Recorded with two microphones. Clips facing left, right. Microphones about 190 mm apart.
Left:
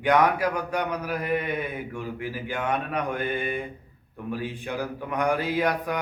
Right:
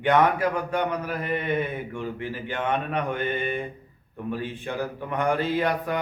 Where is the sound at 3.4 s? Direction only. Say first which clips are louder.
Right 1 dB; centre (ahead or behind).